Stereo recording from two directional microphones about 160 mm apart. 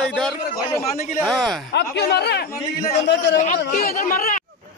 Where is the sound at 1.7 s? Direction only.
90° left.